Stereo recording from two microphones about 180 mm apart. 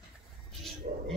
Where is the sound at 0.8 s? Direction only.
40° right (ahead or behind).